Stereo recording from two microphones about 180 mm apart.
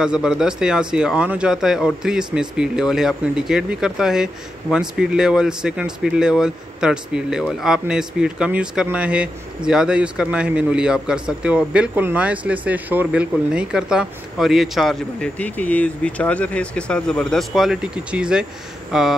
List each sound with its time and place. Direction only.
0.0 s a man's voice: 5° right (ahead or behind)